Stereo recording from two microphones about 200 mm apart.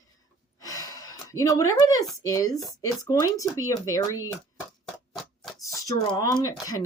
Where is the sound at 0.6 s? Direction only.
15° left (ahead or behind).